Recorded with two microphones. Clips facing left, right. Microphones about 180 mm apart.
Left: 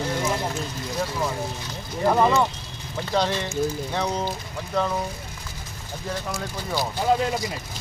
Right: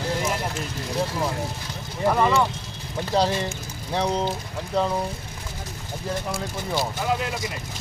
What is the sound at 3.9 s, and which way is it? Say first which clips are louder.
Speech: right 6 dB; 30° right (ahead or behind).